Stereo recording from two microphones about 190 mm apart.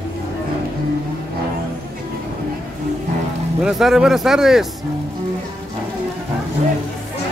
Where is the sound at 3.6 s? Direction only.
Centre (ahead or behind).